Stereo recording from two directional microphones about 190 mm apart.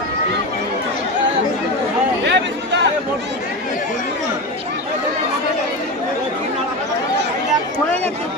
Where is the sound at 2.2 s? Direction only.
70° right (ahead or behind).